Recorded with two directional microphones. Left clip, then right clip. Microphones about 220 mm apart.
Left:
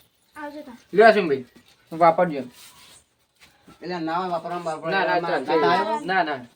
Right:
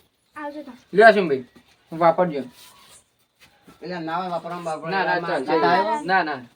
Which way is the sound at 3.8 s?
10° left (ahead or behind).